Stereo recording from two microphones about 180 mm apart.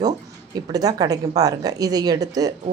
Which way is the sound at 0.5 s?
20° right (ahead or behind).